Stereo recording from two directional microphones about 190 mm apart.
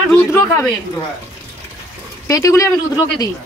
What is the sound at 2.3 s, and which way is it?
Speech, 15° left (ahead or behind).